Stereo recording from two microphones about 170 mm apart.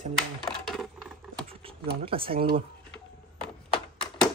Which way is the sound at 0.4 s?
5° left (ahead or behind).